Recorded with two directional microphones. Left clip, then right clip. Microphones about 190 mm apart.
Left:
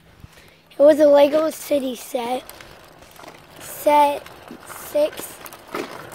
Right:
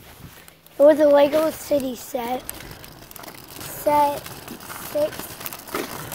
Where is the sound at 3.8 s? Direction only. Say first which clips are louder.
Left 3 dB; 20° left (ahead or behind).